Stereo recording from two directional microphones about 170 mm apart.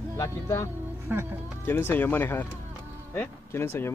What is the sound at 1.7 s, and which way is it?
Speech, 10° left (ahead or behind).